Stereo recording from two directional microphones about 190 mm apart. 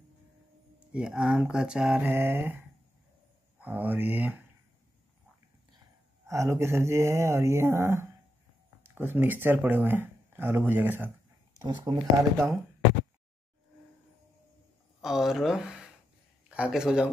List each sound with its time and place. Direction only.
0.9 s speech: 5° right (ahead or behind)
3.6 s speech: 10° right (ahead or behind)
6.2 s speech: 15° right (ahead or behind)
15.0 s a man's voice: centre (ahead or behind)